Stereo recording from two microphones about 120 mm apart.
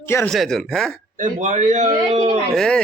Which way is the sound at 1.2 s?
90° right.